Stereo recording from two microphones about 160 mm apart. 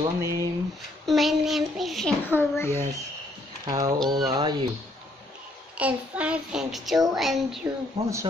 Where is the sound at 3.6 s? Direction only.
20° right (ahead or behind).